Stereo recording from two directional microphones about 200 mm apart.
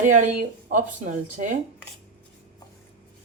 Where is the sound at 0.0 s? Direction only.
40° right (ahead or behind).